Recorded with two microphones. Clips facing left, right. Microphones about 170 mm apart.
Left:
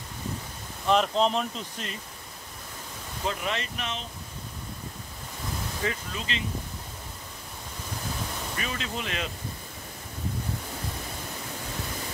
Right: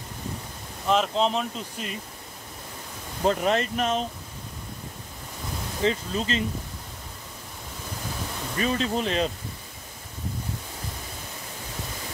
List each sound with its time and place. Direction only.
0.8 s speech: centre (ahead or behind)
3.3 s speech: 40° right (ahead or behind)
5.8 s speech: 25° right (ahead or behind)
6.1 s speech: 40° right (ahead or behind)
8.5 s speech: 35° right (ahead or behind)